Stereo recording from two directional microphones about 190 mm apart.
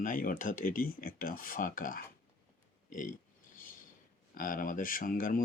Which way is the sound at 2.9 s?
45° left (ahead or behind).